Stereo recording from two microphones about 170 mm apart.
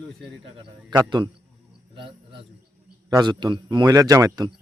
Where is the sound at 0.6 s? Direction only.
25° right (ahead or behind).